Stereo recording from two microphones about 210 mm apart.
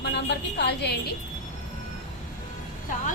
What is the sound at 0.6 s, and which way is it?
Speech, 50° left (ahead or behind).